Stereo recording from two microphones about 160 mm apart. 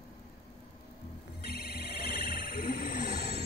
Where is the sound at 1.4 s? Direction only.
75° left (ahead or behind).